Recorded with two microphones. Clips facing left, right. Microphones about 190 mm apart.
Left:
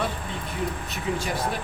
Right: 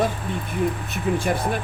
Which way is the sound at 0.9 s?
55° right (ahead or behind).